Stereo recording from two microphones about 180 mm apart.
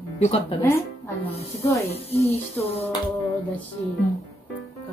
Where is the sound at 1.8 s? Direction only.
35° left (ahead or behind).